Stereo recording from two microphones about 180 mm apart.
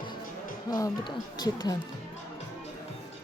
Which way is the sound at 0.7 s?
20° left (ahead or behind).